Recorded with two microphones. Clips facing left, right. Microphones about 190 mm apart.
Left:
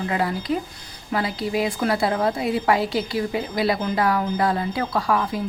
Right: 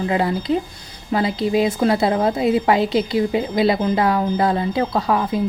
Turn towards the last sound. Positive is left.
turn(degrees=-20)  # may be behind; listen again after turning